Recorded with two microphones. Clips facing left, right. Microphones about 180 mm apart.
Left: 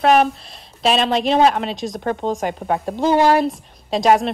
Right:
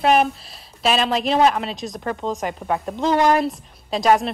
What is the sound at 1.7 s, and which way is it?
Speech, centre (ahead or behind).